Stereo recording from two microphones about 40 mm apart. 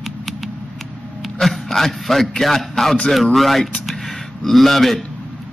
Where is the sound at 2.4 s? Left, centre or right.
Centre.